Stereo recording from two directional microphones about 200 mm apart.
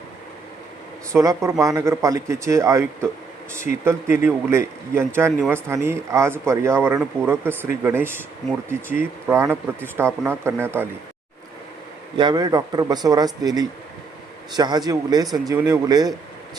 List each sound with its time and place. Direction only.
1.1 s speech: 15° right (ahead or behind)
12.1 s a man's voice: 20° right (ahead or behind)